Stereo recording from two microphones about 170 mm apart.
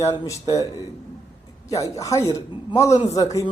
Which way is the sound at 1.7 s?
20° left (ahead or behind).